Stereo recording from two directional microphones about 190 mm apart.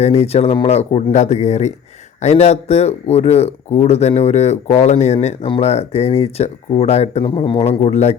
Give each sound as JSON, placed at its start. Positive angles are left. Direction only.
{"t": 0.0, "sound": "speech", "side_deg": 35}